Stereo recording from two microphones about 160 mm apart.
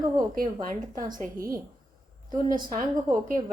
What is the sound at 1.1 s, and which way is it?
Speech, 60° right (ahead or behind).